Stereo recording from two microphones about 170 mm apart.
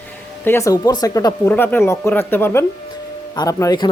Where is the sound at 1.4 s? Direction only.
10° left (ahead or behind).